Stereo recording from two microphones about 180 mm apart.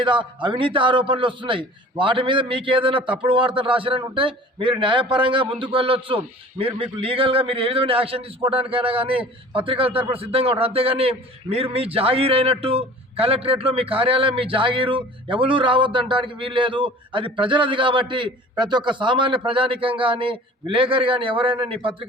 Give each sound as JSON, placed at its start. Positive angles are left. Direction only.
{"t": 0.0, "sound": "a man's voice", "side_deg": -25}